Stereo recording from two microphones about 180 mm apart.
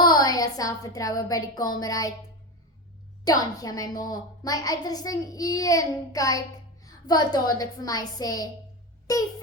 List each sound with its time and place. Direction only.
0.0 s a woman's voice: 20° left (ahead or behind)
3.2 s a woman's voice: 20° left (ahead or behind)